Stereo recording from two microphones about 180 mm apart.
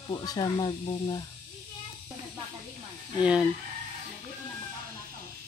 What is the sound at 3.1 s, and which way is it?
Chicken, 5° right (ahead or behind).